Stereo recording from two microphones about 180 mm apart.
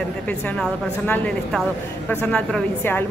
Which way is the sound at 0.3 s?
10° left (ahead or behind).